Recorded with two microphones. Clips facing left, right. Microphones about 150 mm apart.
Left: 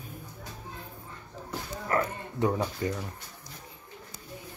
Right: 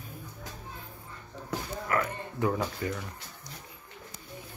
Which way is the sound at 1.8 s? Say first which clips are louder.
Left 3 dB; 30° left (ahead or behind).